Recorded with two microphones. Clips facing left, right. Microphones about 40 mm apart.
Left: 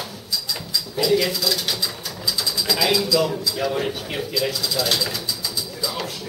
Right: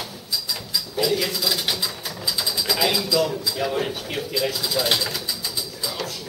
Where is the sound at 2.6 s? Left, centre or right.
Centre.